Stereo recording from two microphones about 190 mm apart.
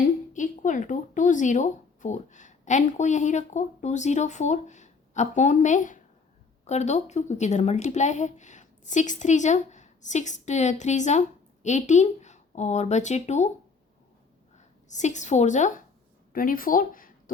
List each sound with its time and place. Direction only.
0.3 s speech: 40° left (ahead or behind)
14.8 s speech: 40° left (ahead or behind)